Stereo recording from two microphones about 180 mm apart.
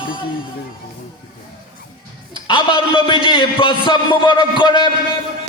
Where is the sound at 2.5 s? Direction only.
25° left (ahead or behind).